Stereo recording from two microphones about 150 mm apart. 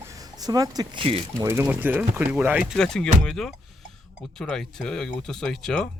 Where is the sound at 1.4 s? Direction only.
20° right (ahead or behind).